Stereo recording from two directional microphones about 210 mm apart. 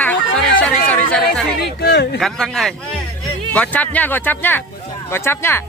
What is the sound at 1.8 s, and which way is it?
Speech, 55° left (ahead or behind).